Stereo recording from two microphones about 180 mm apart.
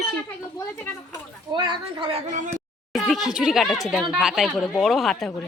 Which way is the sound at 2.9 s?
Centre (ahead or behind).